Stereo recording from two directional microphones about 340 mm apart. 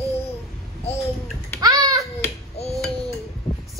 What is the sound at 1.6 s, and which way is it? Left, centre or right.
Babbling, centre.